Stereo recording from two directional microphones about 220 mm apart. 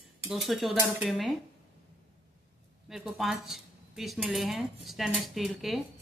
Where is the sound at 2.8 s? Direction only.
Centre (ahead or behind).